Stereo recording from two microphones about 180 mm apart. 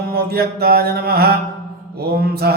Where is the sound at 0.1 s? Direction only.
60° right (ahead or behind).